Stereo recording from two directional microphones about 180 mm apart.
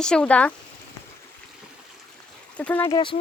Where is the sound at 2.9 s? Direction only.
25° left (ahead or behind).